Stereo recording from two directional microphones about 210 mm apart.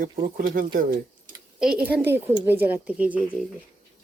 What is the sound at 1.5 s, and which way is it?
A woman's voice, 5° right (ahead or behind).